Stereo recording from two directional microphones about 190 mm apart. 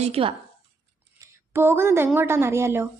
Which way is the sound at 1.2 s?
10° right (ahead or behind).